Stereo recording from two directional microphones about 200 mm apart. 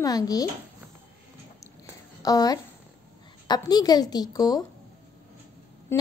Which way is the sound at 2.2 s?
20° left (ahead or behind).